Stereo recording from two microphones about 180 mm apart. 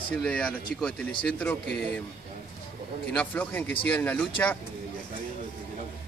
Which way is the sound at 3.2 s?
10° left (ahead or behind).